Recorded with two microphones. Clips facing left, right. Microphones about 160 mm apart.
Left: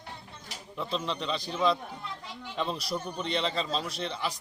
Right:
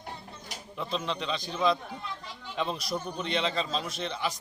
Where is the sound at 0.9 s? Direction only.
Centre (ahead or behind).